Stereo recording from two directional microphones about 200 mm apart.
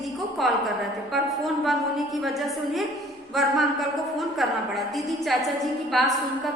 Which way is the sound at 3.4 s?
Centre (ahead or behind).